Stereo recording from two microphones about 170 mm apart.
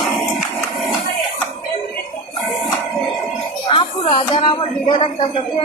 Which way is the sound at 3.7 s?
30° left (ahead or behind).